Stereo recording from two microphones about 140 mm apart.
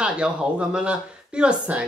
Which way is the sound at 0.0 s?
5° right (ahead or behind).